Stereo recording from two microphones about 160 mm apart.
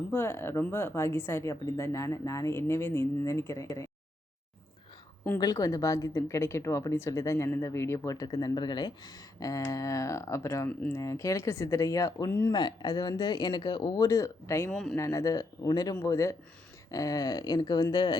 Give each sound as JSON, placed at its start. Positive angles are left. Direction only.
{"t": 0.1, "sound": "speech", "side_deg": 15}
{"t": 5.4, "sound": "speech", "side_deg": 20}
{"t": 14.7, "sound": "speech", "side_deg": 0}
{"t": 14.9, "sound": "speech", "side_deg": 20}